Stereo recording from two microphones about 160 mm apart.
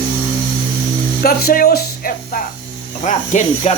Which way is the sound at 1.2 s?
70° left (ahead or behind).